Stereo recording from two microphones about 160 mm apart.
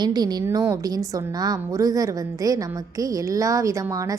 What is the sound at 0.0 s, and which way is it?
A woman's voice, 25° right (ahead or behind).